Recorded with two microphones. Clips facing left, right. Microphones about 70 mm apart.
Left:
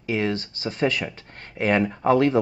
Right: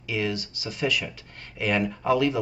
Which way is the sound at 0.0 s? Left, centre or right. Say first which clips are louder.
Left 4 dB; left.